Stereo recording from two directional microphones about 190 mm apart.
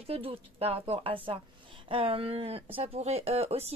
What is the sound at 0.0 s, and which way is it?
Speech, 30° right (ahead or behind).